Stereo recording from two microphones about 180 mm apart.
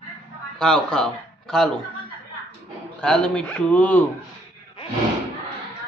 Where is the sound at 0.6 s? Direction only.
5° left (ahead or behind).